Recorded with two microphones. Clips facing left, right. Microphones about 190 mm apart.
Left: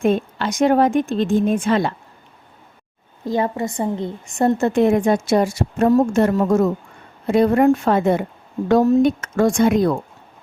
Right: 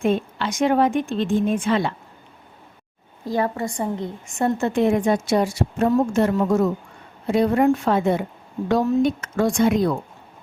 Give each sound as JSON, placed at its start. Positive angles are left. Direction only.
{"t": 0.0, "sound": "a woman's voice", "side_deg": 45}
{"t": 3.2, "sound": "a woman's voice", "side_deg": 20}
{"t": 4.6, "sound": "a woman's voice", "side_deg": 45}